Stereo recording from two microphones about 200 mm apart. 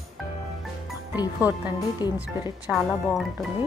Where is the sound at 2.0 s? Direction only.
20° left (ahead or behind).